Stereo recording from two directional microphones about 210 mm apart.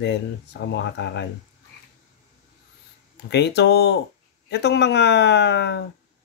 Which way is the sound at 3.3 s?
55° left (ahead or behind).